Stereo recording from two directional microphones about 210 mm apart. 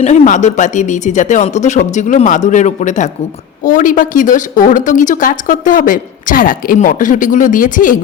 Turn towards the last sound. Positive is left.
turn(degrees=40)  # may be behind; listen again after turning